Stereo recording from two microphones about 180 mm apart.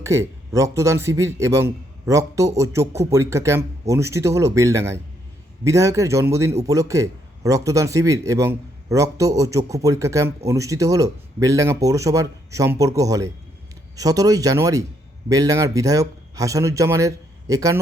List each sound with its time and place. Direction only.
0.0 s a man's voice: 15° right (ahead or behind)